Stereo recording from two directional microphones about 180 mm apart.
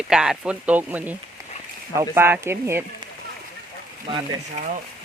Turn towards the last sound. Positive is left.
turn(degrees=-45)  # may be behind; listen again after turning